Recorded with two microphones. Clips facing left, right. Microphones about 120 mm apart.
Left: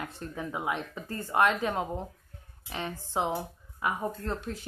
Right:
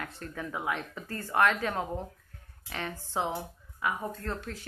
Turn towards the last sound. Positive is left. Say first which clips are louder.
# left 2 dB
turn(degrees=20)  # may be behind; listen again after turning